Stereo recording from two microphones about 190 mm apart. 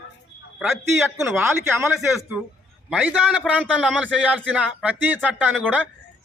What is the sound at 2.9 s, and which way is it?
A man's voice, 5° right (ahead or behind).